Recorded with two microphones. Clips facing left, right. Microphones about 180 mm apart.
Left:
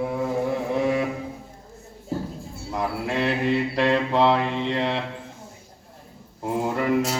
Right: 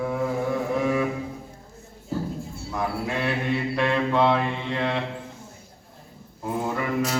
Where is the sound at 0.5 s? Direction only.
35° left (ahead or behind).